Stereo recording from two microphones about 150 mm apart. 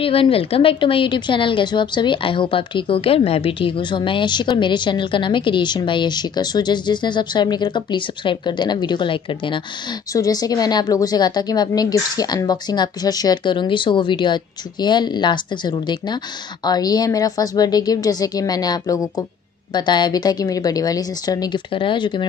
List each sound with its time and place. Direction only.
0.0 s a woman's voice: 40° left (ahead or behind)
10.1 s a woman's voice: 25° left (ahead or behind)